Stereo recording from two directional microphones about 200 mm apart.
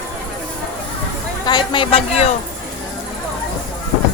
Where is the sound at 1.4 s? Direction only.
20° left (ahead or behind).